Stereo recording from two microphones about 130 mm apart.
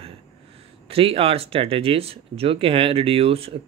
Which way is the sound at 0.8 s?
45° right (ahead or behind).